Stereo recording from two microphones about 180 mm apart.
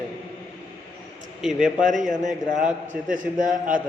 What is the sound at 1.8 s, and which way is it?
A man's voice, 45° right (ahead or behind).